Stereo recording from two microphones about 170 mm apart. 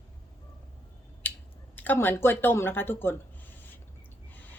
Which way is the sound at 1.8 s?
10° left (ahead or behind).